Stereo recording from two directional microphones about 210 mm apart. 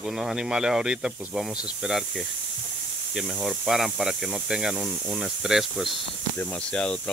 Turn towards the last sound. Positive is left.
turn(degrees=5)  # may be behind; listen again after turning